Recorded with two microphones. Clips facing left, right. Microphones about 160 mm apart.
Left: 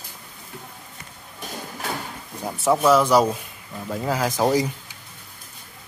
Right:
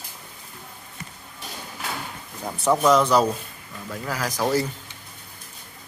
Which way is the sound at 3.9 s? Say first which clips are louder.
Left 5 dB; 25° left (ahead or behind).